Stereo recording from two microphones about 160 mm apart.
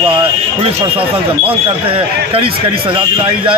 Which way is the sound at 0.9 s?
35° right (ahead or behind).